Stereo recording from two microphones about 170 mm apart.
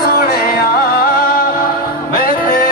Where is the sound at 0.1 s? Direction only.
60° left (ahead or behind).